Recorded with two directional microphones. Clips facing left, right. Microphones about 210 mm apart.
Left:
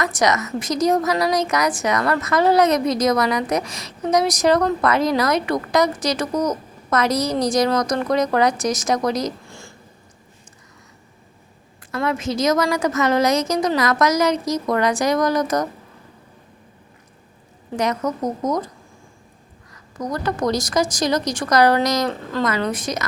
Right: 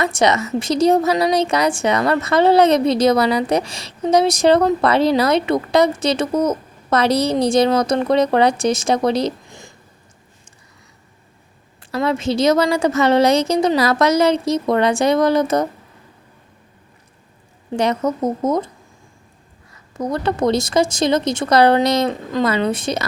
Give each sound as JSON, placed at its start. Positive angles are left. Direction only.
{"t": 0.0, "sound": "a woman's voice", "side_deg": -30}
{"t": 9.4, "sound": "a sound", "side_deg": -20}
{"t": 12.0, "sound": "a woman's voice", "side_deg": -30}
{"t": 17.7, "sound": "a woman's voice", "side_deg": -30}
{"t": 19.7, "sound": "a woman's voice", "side_deg": -25}